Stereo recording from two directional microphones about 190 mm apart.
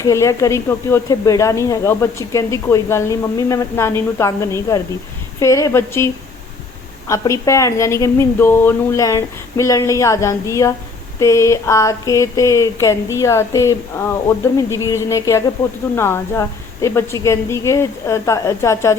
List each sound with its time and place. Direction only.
0.0 s speech: 15° left (ahead or behind)
7.1 s speech: 15° left (ahead or behind)